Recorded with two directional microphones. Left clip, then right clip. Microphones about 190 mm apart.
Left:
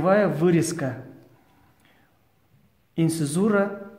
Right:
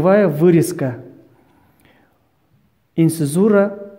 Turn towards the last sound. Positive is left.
turn(degrees=-40)  # may be behind; listen again after turning